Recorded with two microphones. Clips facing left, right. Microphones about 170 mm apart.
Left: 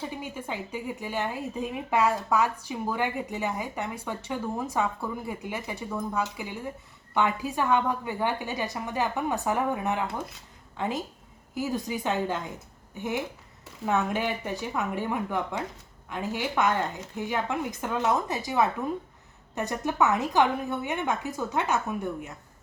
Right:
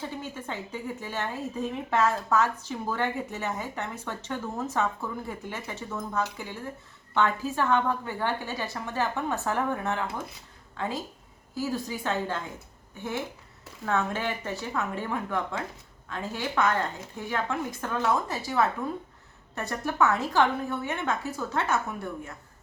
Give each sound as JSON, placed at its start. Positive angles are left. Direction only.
{"t": 0.2, "sound": "a woman's voice", "side_deg": 10}